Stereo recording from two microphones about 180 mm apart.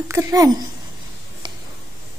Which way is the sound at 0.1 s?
15° right (ahead or behind).